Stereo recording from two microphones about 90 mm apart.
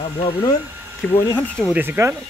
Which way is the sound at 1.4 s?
15° left (ahead or behind).